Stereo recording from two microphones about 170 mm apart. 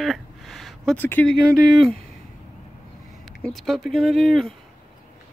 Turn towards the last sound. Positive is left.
turn(degrees=0)  # may be behind; listen again after turning